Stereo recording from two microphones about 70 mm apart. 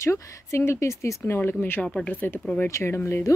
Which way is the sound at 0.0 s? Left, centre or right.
Left.